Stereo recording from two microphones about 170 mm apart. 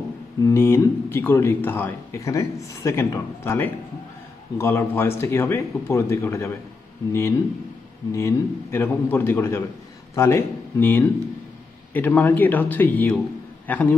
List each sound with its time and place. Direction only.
0.4 s a man's voice: 15° left (ahead or behind)